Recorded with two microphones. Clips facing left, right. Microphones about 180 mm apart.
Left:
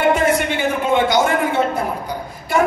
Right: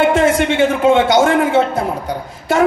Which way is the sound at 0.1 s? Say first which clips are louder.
Right 4 dB; 90° right.